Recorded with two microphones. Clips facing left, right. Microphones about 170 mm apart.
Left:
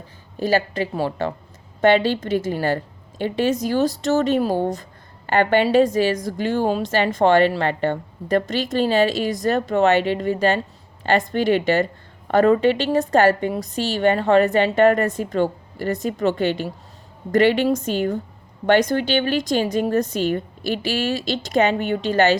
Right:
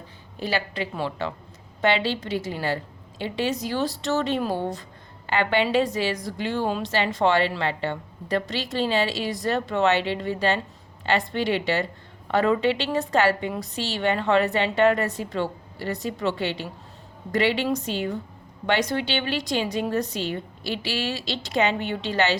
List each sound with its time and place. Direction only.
0.3 s a woman's voice: 45° left (ahead or behind)